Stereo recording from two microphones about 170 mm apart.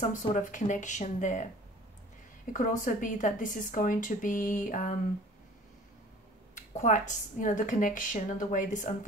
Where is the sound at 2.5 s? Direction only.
50° left (ahead or behind).